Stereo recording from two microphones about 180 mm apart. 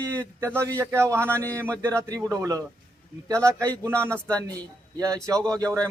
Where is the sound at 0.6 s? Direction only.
10° left (ahead or behind).